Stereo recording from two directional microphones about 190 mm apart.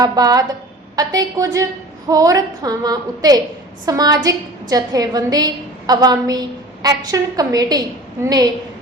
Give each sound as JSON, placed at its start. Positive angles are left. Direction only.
{"t": 0.0, "sound": "a woman's voice", "side_deg": -20}